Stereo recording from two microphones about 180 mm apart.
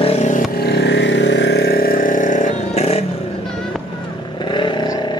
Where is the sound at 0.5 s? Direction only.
65° left (ahead or behind); by 3.0 s 35° left (ahead or behind).